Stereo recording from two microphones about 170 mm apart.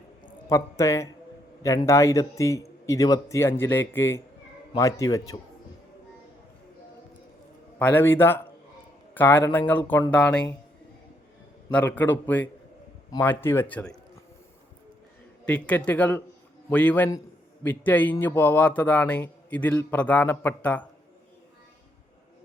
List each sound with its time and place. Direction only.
0.4 s a man's voice: 15° left (ahead or behind)
7.8 s speech: 10° left (ahead or behind)
11.7 s speech: 10° left (ahead or behind)
15.4 s speech: 5° left (ahead or behind)